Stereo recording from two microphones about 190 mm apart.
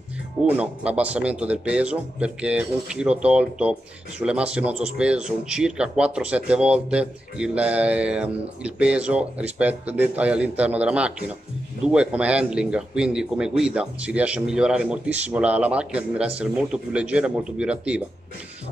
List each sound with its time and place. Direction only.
0.5 s speech: 5° right (ahead or behind)